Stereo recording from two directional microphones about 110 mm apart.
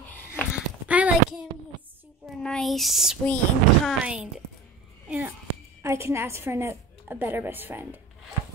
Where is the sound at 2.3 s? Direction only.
5° left (ahead or behind).